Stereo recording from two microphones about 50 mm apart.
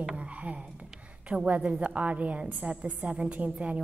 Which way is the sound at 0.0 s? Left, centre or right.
Centre.